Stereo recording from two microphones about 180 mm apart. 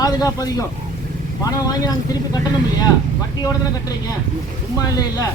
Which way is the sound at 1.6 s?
20° left (ahead or behind).